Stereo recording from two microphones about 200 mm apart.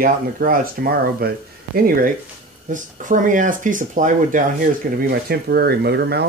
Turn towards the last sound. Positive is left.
turn(degrees=-55)  # may be behind; listen again after turning